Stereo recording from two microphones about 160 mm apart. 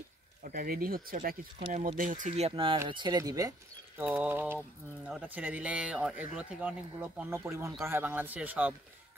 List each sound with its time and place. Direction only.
0.4 s speech: 60° right (ahead or behind)
1.7 s speech: 50° right (ahead or behind); by 3.5 s 20° right (ahead or behind)
4.0 s speech: 10° right (ahead or behind)